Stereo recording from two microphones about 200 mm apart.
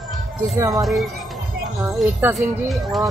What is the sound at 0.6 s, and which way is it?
Speech, 20° right (ahead or behind).